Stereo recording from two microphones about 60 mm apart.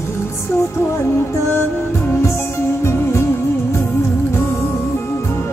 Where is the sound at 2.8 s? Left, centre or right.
Left.